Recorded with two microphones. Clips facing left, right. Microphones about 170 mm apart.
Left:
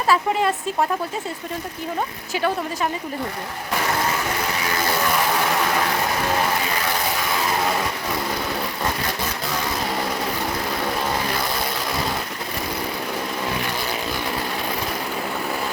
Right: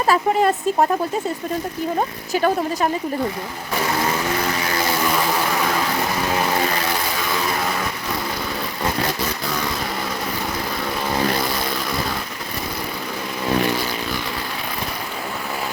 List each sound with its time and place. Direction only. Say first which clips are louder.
0.1 s speech: right 2 dB; 45° right (ahead or behind)
2.0 s speech: right 3 dB; 40° right (ahead or behind)